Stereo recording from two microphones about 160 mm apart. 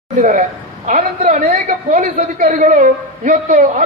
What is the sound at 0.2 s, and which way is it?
A woman's voice, 50° right (ahead or behind).